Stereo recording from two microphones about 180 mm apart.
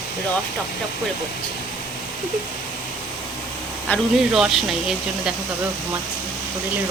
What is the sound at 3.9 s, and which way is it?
Speech, centre (ahead or behind).